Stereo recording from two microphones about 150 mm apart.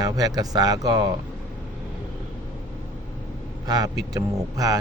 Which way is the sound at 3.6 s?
25° right (ahead or behind).